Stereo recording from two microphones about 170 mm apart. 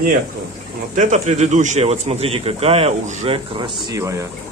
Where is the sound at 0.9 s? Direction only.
45° right (ahead or behind).